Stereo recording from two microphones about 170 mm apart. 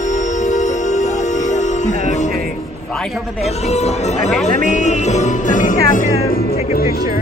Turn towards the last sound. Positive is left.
turn(degrees=50)  # may be behind; listen again after turning